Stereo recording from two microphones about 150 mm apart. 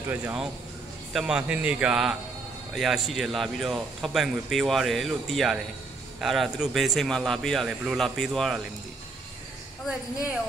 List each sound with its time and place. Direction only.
0.1 s a man's voice: 5° right (ahead or behind)